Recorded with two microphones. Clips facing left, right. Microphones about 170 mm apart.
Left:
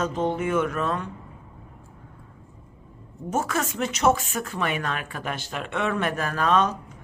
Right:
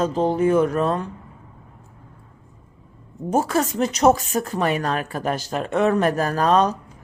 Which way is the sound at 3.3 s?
35° right (ahead or behind).